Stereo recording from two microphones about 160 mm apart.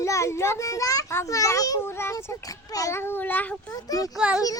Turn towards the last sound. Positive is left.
turn(degrees=-5)  # may be behind; listen again after turning